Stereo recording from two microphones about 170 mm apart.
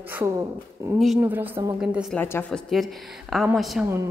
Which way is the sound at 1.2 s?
10° right (ahead or behind).